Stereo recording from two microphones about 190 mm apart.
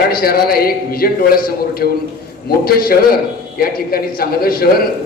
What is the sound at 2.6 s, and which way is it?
A man's voice, 50° left (ahead or behind).